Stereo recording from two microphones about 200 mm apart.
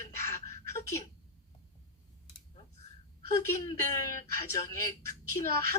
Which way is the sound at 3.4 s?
15° left (ahead or behind).